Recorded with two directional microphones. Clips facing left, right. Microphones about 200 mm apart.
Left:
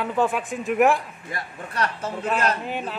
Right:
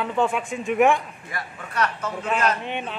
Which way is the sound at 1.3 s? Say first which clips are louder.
Right 1 dB; 30° left (ahead or behind).